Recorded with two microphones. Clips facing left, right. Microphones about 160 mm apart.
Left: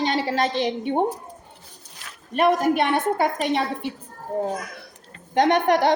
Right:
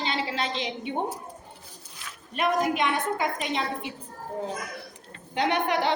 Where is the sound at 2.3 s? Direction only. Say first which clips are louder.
Left 6 dB; 50° left (ahead or behind).